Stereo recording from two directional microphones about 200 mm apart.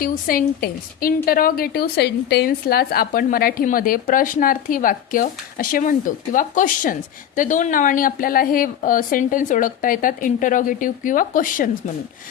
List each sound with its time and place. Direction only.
0.0 s a woman's voice: 45° left (ahead or behind)